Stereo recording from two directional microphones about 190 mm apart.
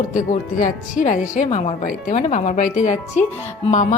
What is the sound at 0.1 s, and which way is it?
Speech, 40° left (ahead or behind).